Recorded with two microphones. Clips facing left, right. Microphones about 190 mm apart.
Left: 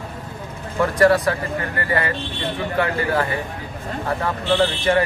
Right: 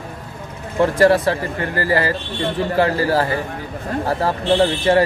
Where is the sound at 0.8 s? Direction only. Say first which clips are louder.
Right 2 dB; 30° right (ahead or behind).